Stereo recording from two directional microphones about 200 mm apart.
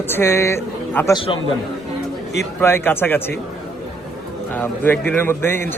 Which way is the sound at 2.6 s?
10° left (ahead or behind).